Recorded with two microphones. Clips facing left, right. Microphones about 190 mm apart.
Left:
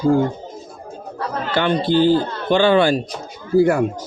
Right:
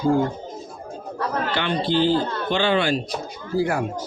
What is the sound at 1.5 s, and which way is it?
Speech, 45° left (ahead or behind).